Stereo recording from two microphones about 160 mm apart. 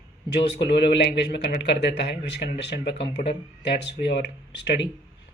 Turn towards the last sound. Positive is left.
turn(degrees=90)